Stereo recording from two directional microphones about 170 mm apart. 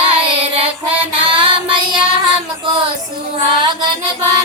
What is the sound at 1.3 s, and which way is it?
Child singing, 30° right (ahead or behind).